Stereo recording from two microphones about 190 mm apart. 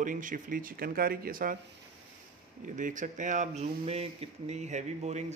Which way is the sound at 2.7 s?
40° right (ahead or behind).